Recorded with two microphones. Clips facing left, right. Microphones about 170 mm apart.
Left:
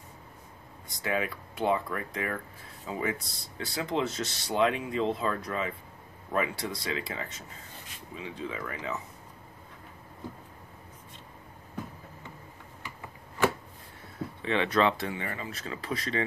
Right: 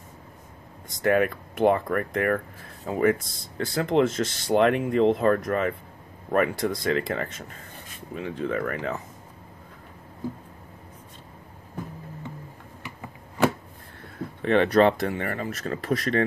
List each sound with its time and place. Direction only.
0.8 s speech: 55° right (ahead or behind)
14.4 s speech: 50° right (ahead or behind)